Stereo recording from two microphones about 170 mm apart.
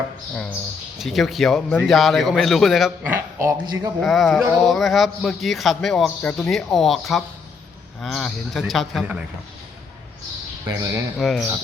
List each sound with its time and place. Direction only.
0.9 s speech: centre (ahead or behind)
3.3 s a man's voice: 15° right (ahead or behind)
4.0 s speech: centre (ahead or behind)
10.7 s speech: 20° right (ahead or behind)
11.2 s speech: centre (ahead or behind)